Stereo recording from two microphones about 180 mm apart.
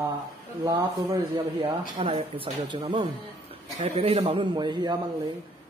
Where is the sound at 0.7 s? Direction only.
20° right (ahead or behind).